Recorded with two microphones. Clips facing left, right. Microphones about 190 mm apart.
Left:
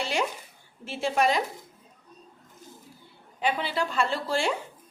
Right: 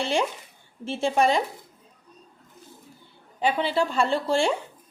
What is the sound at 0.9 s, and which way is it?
Speech, 25° right (ahead or behind).